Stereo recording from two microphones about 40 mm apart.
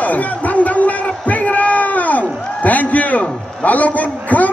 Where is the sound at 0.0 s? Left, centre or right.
Left.